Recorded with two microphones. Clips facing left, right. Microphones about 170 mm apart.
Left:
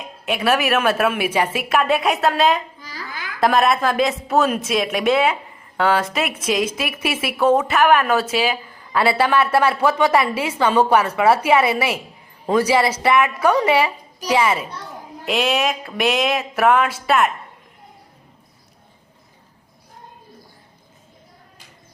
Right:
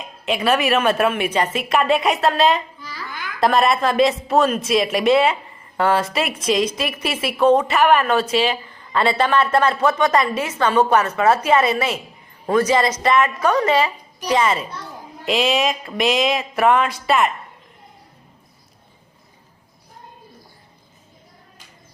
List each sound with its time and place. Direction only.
0.3 s a woman's voice: 5° left (ahead or behind)
2.8 s a sound: 40° left (ahead or behind)
3.4 s a woman's voice: centre (ahead or behind)